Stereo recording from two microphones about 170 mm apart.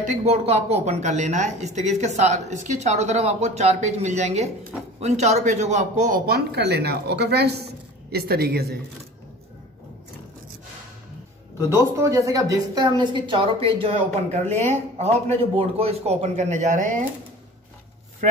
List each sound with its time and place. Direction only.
0.0 s speech: 45° right (ahead or behind); by 8.7 s 65° right (ahead or behind)
11.7 s speech: 20° right (ahead or behind); by 14.4 s 35° right (ahead or behind)
14.4 s speech: 10° left (ahead or behind)
15.0 s speech: 35° right (ahead or behind)